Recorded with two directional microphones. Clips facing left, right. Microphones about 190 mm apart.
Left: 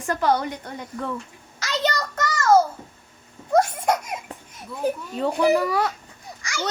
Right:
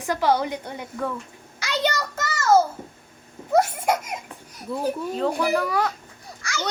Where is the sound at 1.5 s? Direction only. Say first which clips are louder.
Even; 10° right (ahead or behind).